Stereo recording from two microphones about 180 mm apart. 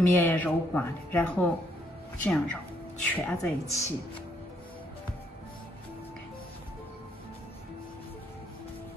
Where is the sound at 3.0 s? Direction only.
10° left (ahead or behind).